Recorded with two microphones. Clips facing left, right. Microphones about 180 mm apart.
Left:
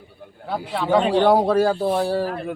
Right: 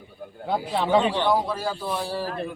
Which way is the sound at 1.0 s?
55° left (ahead or behind).